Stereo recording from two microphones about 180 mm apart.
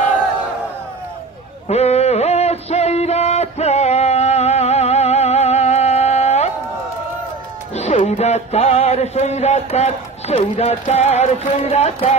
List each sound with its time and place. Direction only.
1.7 s a sound: 35° left (ahead or behind)
7.7 s speech: 40° left (ahead or behind)
11.6 s music: 35° left (ahead or behind)